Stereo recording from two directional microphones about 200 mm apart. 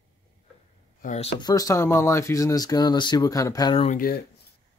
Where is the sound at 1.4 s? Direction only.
20° left (ahead or behind).